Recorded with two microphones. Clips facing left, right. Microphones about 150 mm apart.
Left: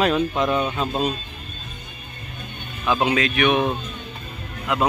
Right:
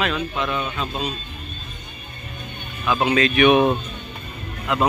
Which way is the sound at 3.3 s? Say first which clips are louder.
Right 4 dB; 5° right (ahead or behind).